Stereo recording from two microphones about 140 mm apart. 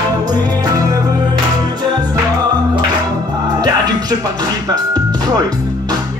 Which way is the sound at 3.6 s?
25° right (ahead or behind).